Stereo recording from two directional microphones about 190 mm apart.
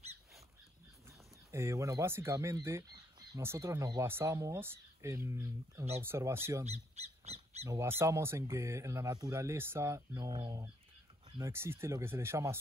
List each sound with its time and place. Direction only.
1.5 s speech: 15° right (ahead or behind)
6.6 s bird: 35° right (ahead or behind)
7.6 s speech: 15° right (ahead or behind)